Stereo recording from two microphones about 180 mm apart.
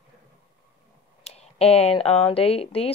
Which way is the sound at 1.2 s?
35° left (ahead or behind).